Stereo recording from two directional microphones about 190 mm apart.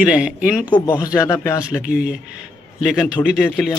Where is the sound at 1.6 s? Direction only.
5° right (ahead or behind).